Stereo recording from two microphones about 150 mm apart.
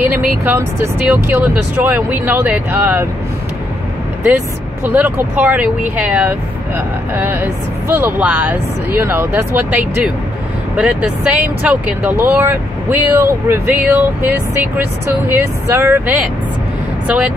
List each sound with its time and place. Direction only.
0.0 s speech: 10° right (ahead or behind)
4.8 s speech: 15° right (ahead or behind)